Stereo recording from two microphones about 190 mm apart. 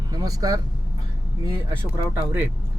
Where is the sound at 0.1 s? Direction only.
20° right (ahead or behind).